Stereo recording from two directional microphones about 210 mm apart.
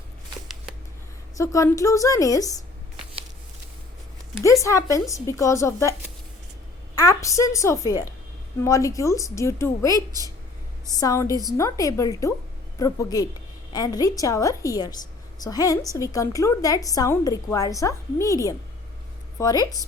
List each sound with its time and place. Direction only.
1.4 s a woman's voice: 15° left (ahead or behind)
4.6 s a woman's voice: 15° left (ahead or behind)
6.9 s a woman's voice: 15° left (ahead or behind)
11.0 s a woman's voice: 15° left (ahead or behind)